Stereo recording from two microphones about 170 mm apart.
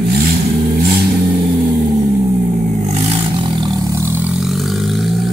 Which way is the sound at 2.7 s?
40° right (ahead or behind).